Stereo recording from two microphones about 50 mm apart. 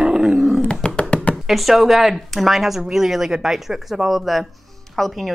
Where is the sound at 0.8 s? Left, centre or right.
Left.